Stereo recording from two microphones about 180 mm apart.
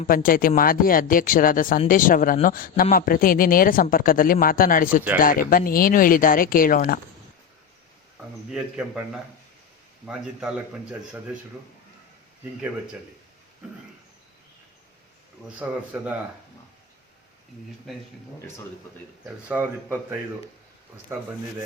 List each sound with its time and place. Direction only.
0.0 s speech: 50° left (ahead or behind)
8.4 s a man's voice: 5° right (ahead or behind)
15.4 s speech: 5° right (ahead or behind)
19.2 s speech: 10° right (ahead or behind)